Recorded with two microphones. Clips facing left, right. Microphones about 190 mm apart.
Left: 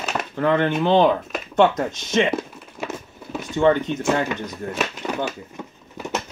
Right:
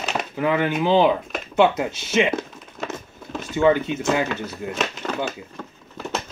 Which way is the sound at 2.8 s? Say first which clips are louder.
Left 1 dB; 10° left (ahead or behind).